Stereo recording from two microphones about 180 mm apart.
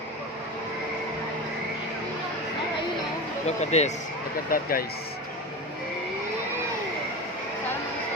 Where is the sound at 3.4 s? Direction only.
40° left (ahead or behind).